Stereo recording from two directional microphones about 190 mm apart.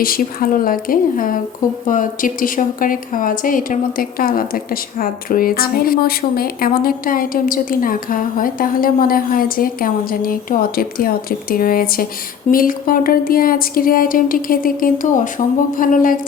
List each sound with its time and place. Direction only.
0.0 s a woman's voice: 50° left (ahead or behind)